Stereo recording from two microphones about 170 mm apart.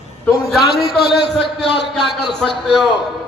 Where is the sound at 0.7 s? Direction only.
65° left (ahead or behind); by 1.9 s 90° left.